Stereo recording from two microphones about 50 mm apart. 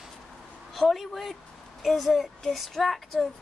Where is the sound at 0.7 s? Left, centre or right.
Centre.